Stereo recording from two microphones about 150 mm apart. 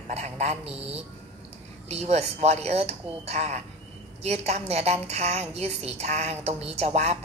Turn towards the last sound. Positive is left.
turn(degrees=-45)  # may be behind; listen again after turning